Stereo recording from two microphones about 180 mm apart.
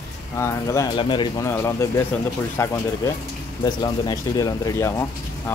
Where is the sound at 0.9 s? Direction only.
25° left (ahead or behind).